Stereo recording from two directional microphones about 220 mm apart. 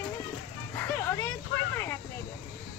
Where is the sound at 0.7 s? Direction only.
10° left (ahead or behind).